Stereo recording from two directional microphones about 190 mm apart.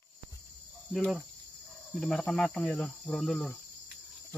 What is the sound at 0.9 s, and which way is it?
Cricket, centre (ahead or behind).